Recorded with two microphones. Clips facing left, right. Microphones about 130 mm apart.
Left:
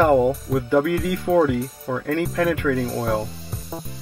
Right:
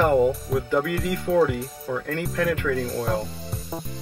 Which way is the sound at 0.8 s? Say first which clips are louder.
Left 4 dB; 25° right (ahead or behind).